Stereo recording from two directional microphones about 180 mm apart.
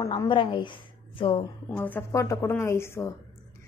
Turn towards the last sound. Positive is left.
turn(degrees=15)  # may be behind; listen again after turning